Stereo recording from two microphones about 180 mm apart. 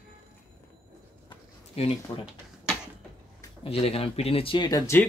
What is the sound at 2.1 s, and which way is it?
Speech, 25° left (ahead or behind).